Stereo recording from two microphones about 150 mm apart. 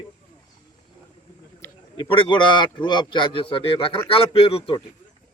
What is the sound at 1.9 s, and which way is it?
Speech, 35° left (ahead or behind).